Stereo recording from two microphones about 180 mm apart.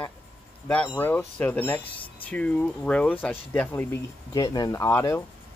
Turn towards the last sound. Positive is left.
turn(degrees=15)  # may be behind; listen again after turning